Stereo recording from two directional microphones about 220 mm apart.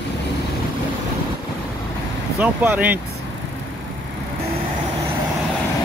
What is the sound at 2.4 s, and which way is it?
Speech, 10° right (ahead or behind).